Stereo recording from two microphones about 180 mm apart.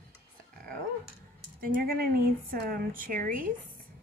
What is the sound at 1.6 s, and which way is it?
Speech, 55° right (ahead or behind).